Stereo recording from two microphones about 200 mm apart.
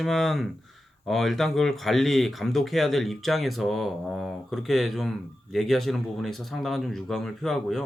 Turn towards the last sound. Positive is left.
turn(degrees=0)  # may be behind; listen again after turning